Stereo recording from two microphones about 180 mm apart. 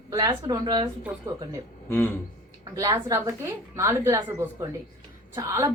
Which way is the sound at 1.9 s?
10° left (ahead or behind).